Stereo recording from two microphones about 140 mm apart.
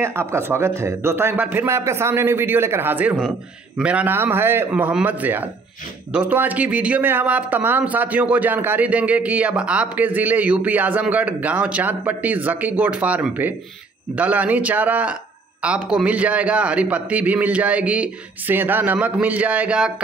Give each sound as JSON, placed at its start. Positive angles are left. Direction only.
{"t": 0.0, "sound": "speech", "side_deg": -15}